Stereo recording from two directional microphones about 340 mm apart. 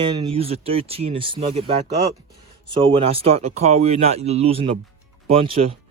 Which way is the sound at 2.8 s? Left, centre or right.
Centre.